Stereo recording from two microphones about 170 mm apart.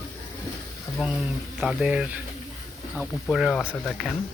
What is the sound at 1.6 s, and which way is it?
Speech, 5° right (ahead or behind).